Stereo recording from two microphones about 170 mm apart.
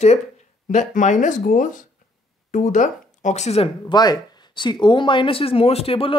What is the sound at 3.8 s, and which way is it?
Speech, 25° left (ahead or behind).